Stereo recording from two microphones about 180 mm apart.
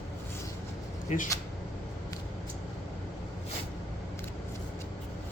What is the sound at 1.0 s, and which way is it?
Speech, 45° left (ahead or behind).